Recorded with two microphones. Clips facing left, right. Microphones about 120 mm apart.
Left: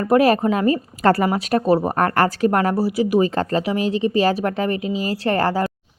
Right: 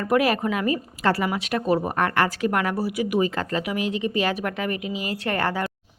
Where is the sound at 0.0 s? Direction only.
35° left (ahead or behind).